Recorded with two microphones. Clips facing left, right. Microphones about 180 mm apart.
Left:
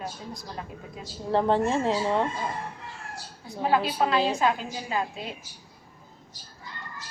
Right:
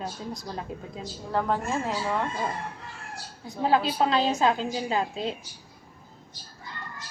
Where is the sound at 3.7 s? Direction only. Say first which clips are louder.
Right 1 dB; 25° right (ahead or behind).